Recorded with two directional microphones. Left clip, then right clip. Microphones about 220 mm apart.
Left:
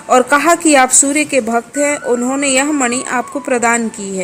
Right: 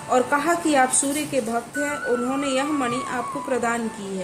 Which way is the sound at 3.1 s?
35° left (ahead or behind).